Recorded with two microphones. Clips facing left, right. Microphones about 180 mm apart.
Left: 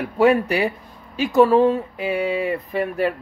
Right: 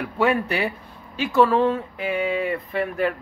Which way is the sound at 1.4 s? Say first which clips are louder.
Left 4 dB; 15° left (ahead or behind).